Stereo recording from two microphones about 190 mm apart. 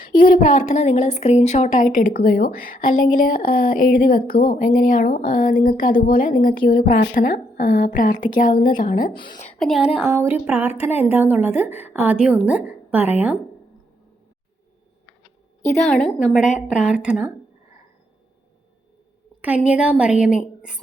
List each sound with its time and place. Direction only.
0.0 s a woman's voice: 50° left (ahead or behind)
9.6 s a woman's voice: centre (ahead or behind)
11.5 s a woman's voice: 35° left (ahead or behind)
11.8 s a woman's voice: 10° right (ahead or behind)
15.7 s a woman's voice: 5° left (ahead or behind)
19.4 s a woman's voice: 5° right (ahead or behind)